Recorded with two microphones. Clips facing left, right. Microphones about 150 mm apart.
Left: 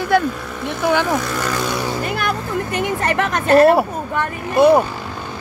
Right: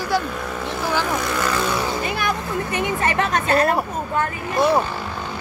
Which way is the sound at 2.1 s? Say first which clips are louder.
Left 2 dB; 55° left (ahead or behind).